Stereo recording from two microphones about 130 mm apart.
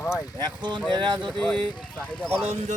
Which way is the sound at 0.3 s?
35° right (ahead or behind).